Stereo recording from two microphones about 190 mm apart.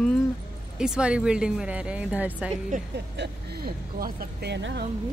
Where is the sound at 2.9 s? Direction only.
60° right (ahead or behind).